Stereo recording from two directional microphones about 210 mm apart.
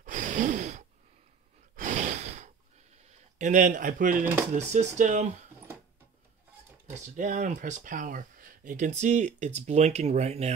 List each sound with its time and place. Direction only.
0.0 s gasp: 35° right (ahead or behind)
1.8 s sigh: 35° right (ahead or behind)
3.0 s speech: 35° right (ahead or behind)
6.9 s speech: 35° right (ahead or behind)